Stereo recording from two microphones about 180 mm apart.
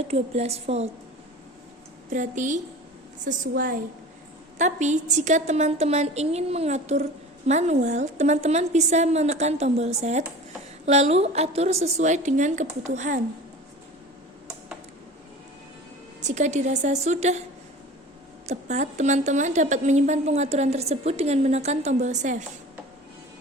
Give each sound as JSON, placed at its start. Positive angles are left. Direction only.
{"t": 0.1, "sound": "a woman's voice", "side_deg": -35}
{"t": 2.0, "sound": "a woman's voice", "side_deg": -45}
{"t": 4.5, "sound": "a woman's voice", "side_deg": -40}
{"t": 16.2, "sound": "a woman's voice", "side_deg": -40}
{"t": 18.4, "sound": "a woman's voice", "side_deg": -40}